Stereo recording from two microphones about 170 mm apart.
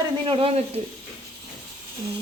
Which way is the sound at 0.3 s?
30° right (ahead or behind).